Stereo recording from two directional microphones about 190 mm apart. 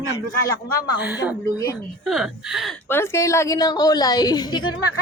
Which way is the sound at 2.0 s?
Centre (ahead or behind).